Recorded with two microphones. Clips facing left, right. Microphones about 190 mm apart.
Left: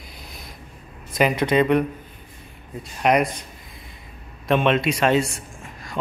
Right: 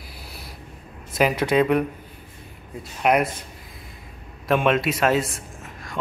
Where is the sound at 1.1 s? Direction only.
5° right (ahead or behind).